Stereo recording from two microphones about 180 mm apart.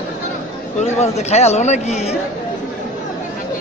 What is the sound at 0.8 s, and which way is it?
Speech, 35° left (ahead or behind).